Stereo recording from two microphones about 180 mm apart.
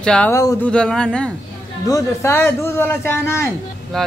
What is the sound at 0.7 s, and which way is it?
Speech, 5° left (ahead or behind).